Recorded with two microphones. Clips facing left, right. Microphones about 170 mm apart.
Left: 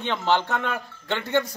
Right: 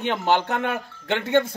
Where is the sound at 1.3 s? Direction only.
25° right (ahead or behind).